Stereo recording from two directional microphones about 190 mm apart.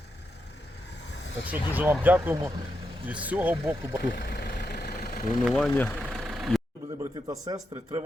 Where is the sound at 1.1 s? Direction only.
70° left (ahead or behind).